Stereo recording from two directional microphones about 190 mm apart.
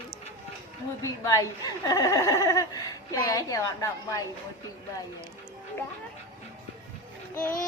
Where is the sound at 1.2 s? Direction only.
15° left (ahead or behind).